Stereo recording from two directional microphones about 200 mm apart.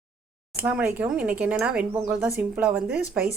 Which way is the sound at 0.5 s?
10° right (ahead or behind).